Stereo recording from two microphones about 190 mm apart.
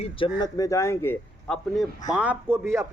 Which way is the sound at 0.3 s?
20° left (ahead or behind).